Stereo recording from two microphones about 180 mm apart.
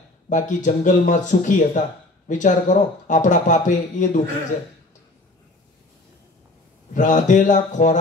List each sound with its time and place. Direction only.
0.3 s speech: 45° left (ahead or behind)
6.9 s speech: 45° left (ahead or behind)